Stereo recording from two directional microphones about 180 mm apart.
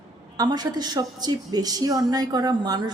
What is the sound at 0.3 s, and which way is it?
A woman's voice, 20° right (ahead or behind).